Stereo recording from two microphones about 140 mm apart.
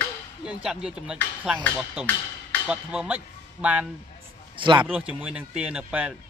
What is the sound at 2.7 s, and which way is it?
Speech, 5° right (ahead or behind).